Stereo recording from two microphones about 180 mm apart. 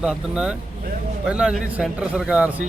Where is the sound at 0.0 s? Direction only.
5° right (ahead or behind).